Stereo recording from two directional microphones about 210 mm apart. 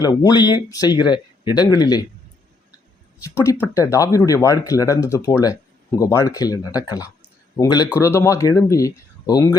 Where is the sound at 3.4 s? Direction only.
15° left (ahead or behind).